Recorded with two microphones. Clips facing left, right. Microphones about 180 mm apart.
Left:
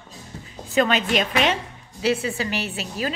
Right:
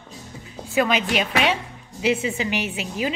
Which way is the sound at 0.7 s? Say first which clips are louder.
Left 1 dB; 10° right (ahead or behind).